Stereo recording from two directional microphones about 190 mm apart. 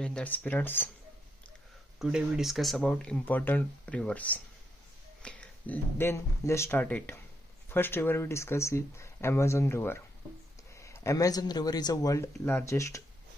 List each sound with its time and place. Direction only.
0.0 s speech: 5° left (ahead or behind)
2.0 s speech: 5° right (ahead or behind); by 13.0 s 15° left (ahead or behind)